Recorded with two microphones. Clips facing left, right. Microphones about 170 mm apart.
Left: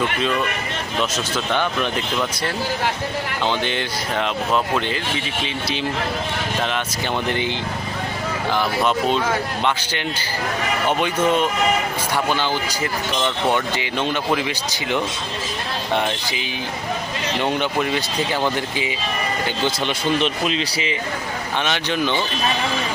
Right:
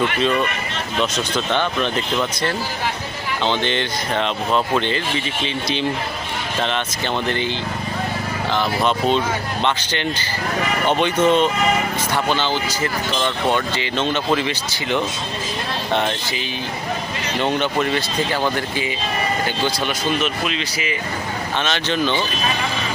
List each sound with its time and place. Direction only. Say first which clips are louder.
1.1 s speech: right 1 dB; 10° left (ahead or behind)
3.4 s speech: right 3 dB; 10° left (ahead or behind)
6.6 s speech: right 4 dB; 5° left (ahead or behind)
8.5 s speech: right 1 dB; 5° left (ahead or behind)
17.4 s speech: right 2 dB; 10° left (ahead or behind)
20.2 s speech: left 2 dB; 35° left (ahead or behind)
21.6 s speech: right 1 dB; 15° left (ahead or behind)